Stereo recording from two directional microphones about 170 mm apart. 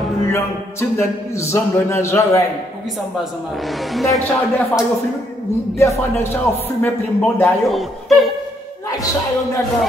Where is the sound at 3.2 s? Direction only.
Centre (ahead or behind).